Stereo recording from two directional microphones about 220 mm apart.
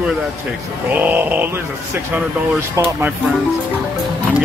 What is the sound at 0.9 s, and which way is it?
Speech, 10° right (ahead or behind).